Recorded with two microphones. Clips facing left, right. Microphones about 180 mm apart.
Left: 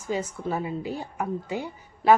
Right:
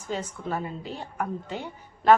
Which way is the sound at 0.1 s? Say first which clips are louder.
Left 3 dB; 10° left (ahead or behind).